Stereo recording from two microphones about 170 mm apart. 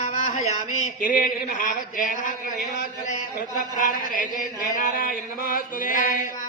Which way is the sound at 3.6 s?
50° left (ahead or behind).